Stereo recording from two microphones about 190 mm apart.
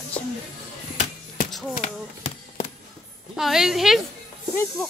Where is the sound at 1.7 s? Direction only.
35° left (ahead or behind).